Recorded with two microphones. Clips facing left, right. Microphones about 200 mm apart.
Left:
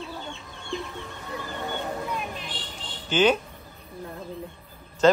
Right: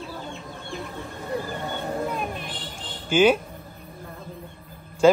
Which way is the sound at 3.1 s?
10° right (ahead or behind).